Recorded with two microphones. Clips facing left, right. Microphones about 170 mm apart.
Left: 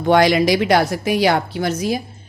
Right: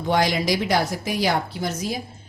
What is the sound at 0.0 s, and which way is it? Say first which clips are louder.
A woman's voice: left 7 dB; 70° left (ahead or behind).